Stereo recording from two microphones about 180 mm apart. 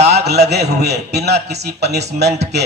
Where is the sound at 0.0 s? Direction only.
65° right (ahead or behind).